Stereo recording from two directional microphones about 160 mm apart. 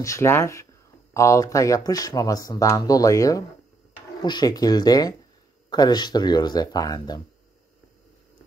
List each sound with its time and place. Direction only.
0.0 s speech: 15° left (ahead or behind)